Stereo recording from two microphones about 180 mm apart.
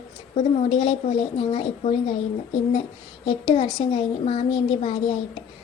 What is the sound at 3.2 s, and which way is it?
Speech, 30° left (ahead or behind).